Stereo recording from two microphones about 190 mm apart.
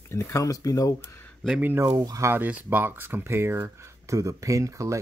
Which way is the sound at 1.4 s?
5° right (ahead or behind).